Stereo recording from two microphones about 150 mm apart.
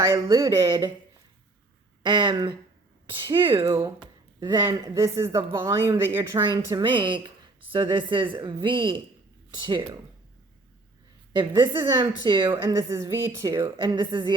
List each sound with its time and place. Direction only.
0.0 s speech: 20° right (ahead or behind)
2.0 s speech: 30° right (ahead or behind)
3.7 s speech: 25° right (ahead or behind)
6.4 s speech: 30° right (ahead or behind)
11.3 s speech: 35° right (ahead or behind)
12.5 s speech: 20° right (ahead or behind)